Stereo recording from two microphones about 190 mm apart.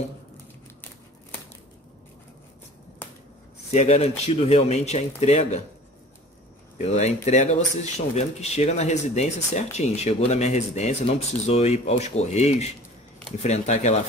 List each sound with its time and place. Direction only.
3.7 s speech: 35° left (ahead or behind)
6.8 s speech: 35° left (ahead or behind)